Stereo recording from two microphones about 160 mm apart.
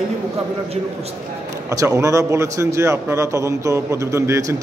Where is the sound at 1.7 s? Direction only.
20° right (ahead or behind).